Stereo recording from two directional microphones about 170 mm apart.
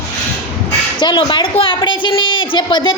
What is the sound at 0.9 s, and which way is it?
A woman's voice, 30° left (ahead or behind).